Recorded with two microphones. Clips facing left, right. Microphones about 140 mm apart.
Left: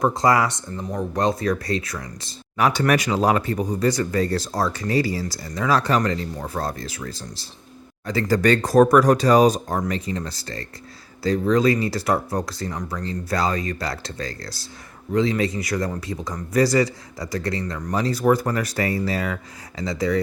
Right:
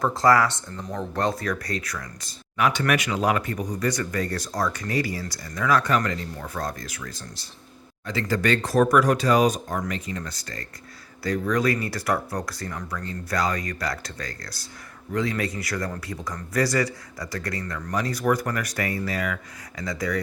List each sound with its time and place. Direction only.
0.0 s speech: 20° left (ahead or behind)
2.6 s speech: 35° left (ahead or behind)